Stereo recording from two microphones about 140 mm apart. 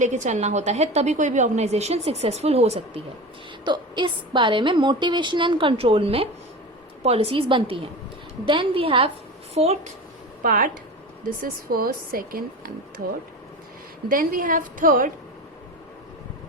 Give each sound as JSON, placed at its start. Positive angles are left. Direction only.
{"t": 0.0, "sound": "a woman's voice", "side_deg": -60}
{"t": 3.6, "sound": "a woman's voice", "side_deg": -35}
{"t": 10.4, "sound": "speech", "side_deg": -85}
{"t": 14.1, "sound": "a woman's voice", "side_deg": -85}